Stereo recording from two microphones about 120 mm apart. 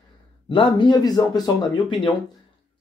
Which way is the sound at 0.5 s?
40° left (ahead or behind).